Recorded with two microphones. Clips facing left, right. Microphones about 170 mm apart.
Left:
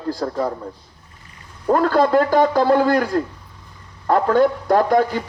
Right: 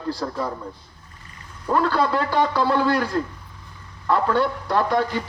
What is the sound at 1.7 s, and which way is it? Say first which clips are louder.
A man's voice: left 5 dB; 45° left (ahead or behind).